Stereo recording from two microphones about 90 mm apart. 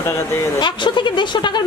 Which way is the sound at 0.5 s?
60° left (ahead or behind).